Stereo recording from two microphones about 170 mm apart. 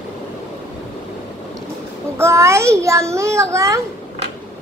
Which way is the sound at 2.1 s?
15° right (ahead or behind).